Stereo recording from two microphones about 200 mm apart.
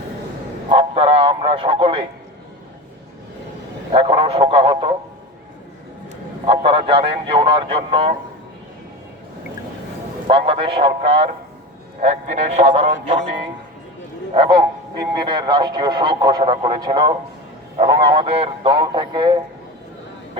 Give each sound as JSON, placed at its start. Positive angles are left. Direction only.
{"t": 0.7, "sound": "speech", "side_deg": -30}
{"t": 3.9, "sound": "a man's voice", "side_deg": -25}
{"t": 6.4, "sound": "a man's voice", "side_deg": -25}
{"t": 10.2, "sound": "a man's voice", "side_deg": -25}
{"t": 14.3, "sound": "a man's voice", "side_deg": -25}